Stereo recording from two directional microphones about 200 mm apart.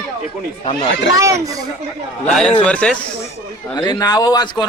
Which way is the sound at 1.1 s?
15° right (ahead or behind).